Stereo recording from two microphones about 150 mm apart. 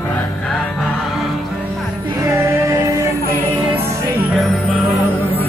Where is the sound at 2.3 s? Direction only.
20° right (ahead or behind).